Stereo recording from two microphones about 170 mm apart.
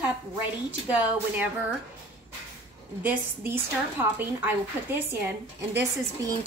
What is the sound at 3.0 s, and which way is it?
A woman's voice, 10° right (ahead or behind).